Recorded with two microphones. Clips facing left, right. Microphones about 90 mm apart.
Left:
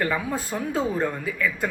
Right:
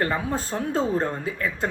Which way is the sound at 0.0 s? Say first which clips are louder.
Right 1 dB; 30° right (ahead or behind).